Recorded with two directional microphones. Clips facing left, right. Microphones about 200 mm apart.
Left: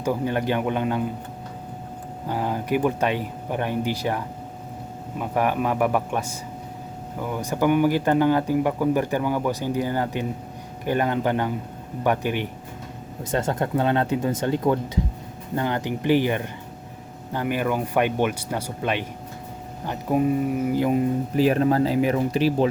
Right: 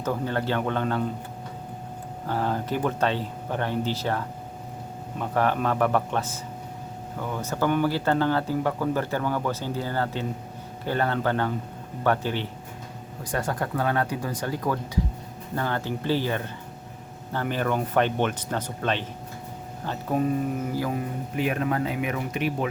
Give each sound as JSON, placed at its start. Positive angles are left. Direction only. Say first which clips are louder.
{"t": 0.0, "sound": "speech", "louder": "left 3 dB", "side_deg": 15}
{"t": 2.2, "sound": "speech", "louder": "left 1 dB", "side_deg": 15}
{"t": 20.7, "sound": "speech", "louder": "left 7 dB", "side_deg": 20}
{"t": 21.3, "sound": "speech", "louder": "left 6 dB", "side_deg": 35}